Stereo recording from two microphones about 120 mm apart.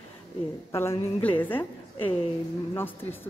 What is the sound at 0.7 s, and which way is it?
Speech, 25° left (ahead or behind).